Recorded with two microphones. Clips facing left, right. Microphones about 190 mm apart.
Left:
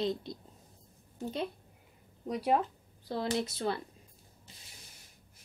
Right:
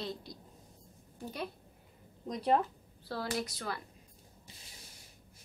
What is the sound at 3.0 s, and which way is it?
Speech, 20° left (ahead or behind).